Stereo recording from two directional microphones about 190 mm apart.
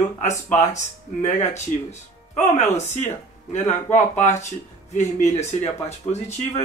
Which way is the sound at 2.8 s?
35° left (ahead or behind).